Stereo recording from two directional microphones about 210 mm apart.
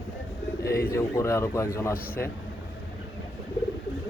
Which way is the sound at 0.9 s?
15° left (ahead or behind).